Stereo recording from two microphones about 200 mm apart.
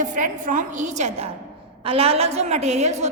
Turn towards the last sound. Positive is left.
turn(degrees=-35)  # may be behind; listen again after turning